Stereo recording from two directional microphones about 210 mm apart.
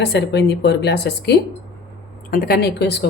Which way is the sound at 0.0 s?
55° left (ahead or behind).